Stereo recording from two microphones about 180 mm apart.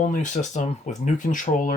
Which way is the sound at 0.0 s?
45° left (ahead or behind).